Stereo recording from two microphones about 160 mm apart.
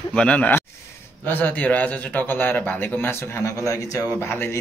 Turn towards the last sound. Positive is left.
turn(degrees=15)  # may be behind; listen again after turning